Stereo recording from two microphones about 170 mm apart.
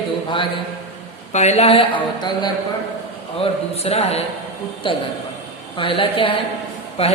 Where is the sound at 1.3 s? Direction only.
40° left (ahead or behind).